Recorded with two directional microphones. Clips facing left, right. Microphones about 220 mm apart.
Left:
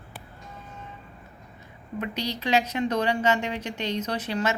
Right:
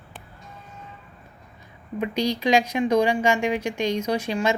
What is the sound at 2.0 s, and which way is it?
Speech, 15° right (ahead or behind).